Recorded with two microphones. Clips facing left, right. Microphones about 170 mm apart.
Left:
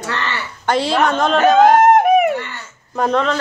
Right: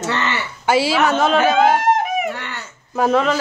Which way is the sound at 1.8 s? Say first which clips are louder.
Left 7 dB; 55° left (ahead or behind).